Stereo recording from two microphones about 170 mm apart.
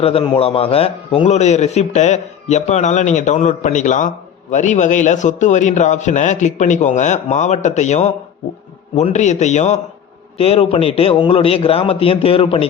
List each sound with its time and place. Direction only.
0.0 s a man's voice: 35° left (ahead or behind)